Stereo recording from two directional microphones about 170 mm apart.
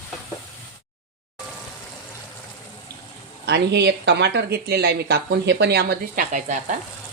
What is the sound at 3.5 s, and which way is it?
Speech, 85° right.